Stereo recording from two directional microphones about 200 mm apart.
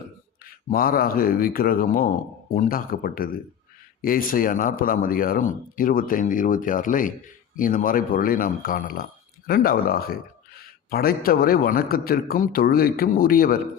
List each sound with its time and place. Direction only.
0.7 s speech: 45° left (ahead or behind)